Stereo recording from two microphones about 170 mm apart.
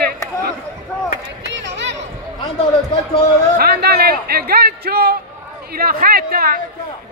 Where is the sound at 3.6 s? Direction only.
65° right (ahead or behind).